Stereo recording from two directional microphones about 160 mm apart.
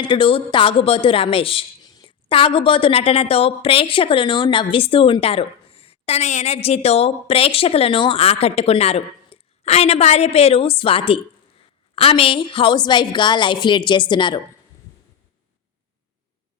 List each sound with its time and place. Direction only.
0.0 s a woman's voice: 30° left (ahead or behind)